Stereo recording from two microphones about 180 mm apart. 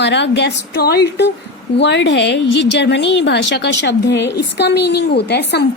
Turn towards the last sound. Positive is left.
turn(degrees=65)  # may be behind; listen again after turning